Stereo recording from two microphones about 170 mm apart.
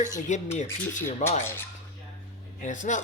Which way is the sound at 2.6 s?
45° left (ahead or behind).